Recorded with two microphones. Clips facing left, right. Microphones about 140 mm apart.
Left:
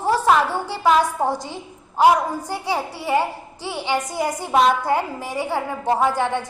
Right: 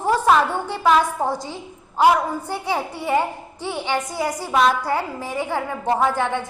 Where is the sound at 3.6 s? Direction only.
10° left (ahead or behind).